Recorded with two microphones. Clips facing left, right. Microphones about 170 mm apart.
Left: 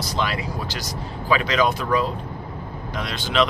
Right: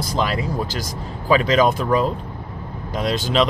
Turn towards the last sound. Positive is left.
turn(degrees=-40)  # may be behind; listen again after turning